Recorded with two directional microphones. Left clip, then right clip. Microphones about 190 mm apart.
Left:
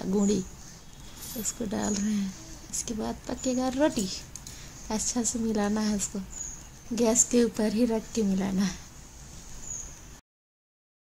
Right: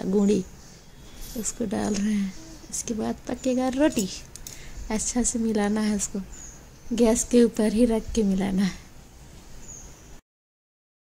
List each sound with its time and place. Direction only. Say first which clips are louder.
0.0 s a woman's voice: right 5 dB; 20° right (ahead or behind)
1.4 s a woman's voice: right 3 dB; 20° right (ahead or behind)